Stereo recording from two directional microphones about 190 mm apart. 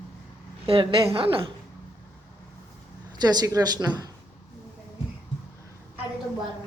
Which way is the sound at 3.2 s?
20° right (ahead or behind).